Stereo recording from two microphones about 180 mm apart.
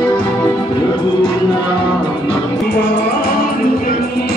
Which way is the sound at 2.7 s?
70° left (ahead or behind).